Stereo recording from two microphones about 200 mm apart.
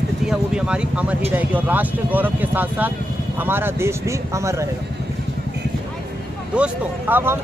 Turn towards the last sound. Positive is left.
turn(degrees=-10)  # may be behind; listen again after turning